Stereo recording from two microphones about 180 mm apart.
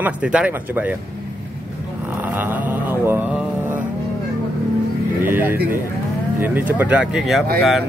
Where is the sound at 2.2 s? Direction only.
10° right (ahead or behind).